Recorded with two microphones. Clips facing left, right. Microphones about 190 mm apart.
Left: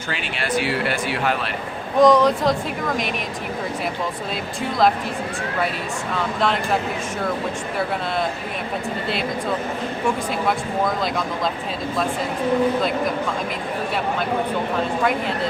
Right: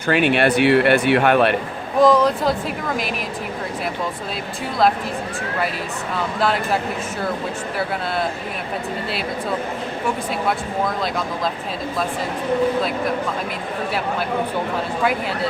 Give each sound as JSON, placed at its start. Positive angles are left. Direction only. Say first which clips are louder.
{"t": 0.1, "sound": "speech", "louder": "right 9 dB", "side_deg": -60}
{"t": 2.0, "sound": "speech", "louder": "even", "side_deg": 0}
{"t": 6.4, "sound": "speech", "louder": "right 1 dB", "side_deg": -5}